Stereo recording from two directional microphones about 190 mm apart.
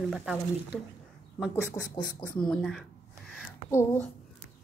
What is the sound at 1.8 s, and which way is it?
Speech, 20° left (ahead or behind).